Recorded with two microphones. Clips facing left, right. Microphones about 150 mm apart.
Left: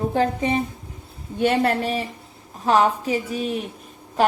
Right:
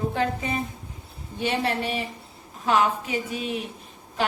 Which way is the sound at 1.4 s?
50° left (ahead or behind).